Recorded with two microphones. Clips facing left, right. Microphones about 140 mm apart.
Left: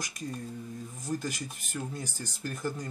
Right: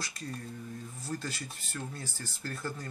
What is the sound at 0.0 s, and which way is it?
Speech, 15° left (ahead or behind).